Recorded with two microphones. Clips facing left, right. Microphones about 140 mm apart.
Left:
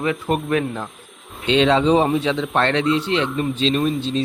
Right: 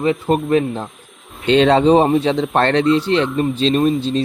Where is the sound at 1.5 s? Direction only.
45° right (ahead or behind).